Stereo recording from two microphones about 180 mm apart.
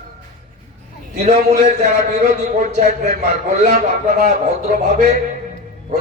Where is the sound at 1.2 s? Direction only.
40° right (ahead or behind).